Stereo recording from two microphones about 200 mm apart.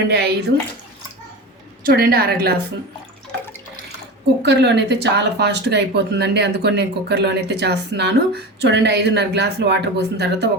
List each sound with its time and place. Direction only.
0.1 s speech: 55° right (ahead or behind)
1.8 s a woman's voice: 50° right (ahead or behind)
4.4 s speech: 60° right (ahead or behind)